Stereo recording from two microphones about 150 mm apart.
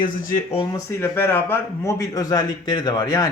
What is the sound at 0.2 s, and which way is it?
Speech, 65° left (ahead or behind).